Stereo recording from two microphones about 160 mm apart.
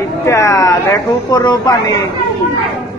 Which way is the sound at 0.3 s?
20° left (ahead or behind).